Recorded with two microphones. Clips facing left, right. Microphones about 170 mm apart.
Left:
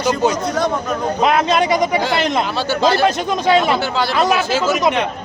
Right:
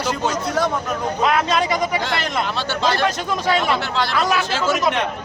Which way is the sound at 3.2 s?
20° left (ahead or behind).